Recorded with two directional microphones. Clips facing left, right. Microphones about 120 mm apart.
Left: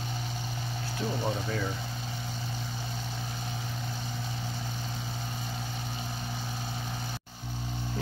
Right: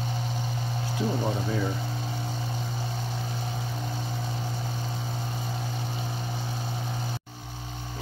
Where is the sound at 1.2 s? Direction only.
10° right (ahead or behind).